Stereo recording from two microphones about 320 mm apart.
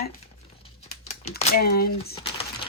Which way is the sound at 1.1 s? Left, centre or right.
Left.